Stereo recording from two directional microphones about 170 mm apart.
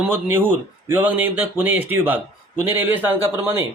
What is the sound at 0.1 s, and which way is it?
Speech, 15° right (ahead or behind).